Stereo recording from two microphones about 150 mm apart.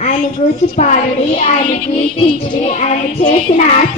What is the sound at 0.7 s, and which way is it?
Child singing, 50° left (ahead or behind).